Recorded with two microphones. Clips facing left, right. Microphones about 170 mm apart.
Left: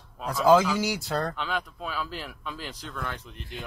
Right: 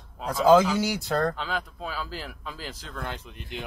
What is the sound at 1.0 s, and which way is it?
A man's voice, 35° right (ahead or behind).